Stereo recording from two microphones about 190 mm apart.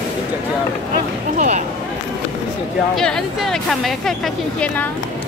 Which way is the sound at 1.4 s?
40° right (ahead or behind).